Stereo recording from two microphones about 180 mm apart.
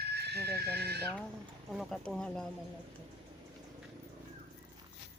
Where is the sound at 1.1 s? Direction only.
5° left (ahead or behind).